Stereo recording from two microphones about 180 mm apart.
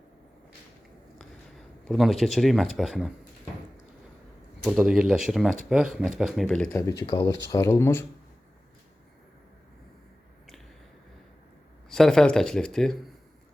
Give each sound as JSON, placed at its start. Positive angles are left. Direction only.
{"t": 1.9, "sound": "speech", "side_deg": 0}
{"t": 4.8, "sound": "speech", "side_deg": -5}
{"t": 6.7, "sound": "speech", "side_deg": 15}
{"t": 11.9, "sound": "speech", "side_deg": 0}